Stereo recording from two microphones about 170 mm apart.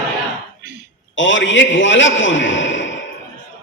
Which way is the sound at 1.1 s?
90° left.